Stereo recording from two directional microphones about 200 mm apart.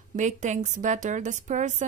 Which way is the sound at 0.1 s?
40° right (ahead or behind).